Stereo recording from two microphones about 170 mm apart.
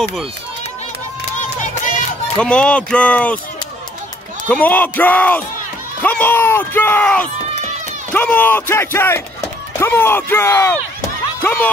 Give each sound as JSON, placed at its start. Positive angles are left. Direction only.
{"t": 0.0, "sound": "speech", "side_deg": 0}
{"t": 1.3, "sound": "crowd", "side_deg": 45}
{"t": 2.3, "sound": "speech", "side_deg": 5}
{"t": 4.5, "sound": "speech", "side_deg": 10}